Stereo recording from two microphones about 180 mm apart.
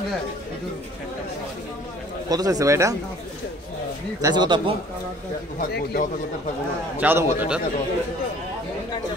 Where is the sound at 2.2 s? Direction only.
20° right (ahead or behind).